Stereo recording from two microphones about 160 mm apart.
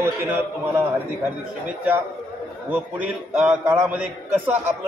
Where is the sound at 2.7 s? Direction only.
10° right (ahead or behind).